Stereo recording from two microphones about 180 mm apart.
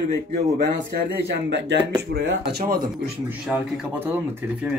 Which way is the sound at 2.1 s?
60° right (ahead or behind).